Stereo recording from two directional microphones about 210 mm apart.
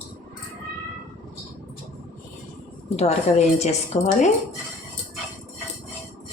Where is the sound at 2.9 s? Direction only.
30° left (ahead or behind).